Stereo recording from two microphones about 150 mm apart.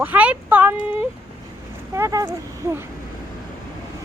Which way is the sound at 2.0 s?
20° right (ahead or behind).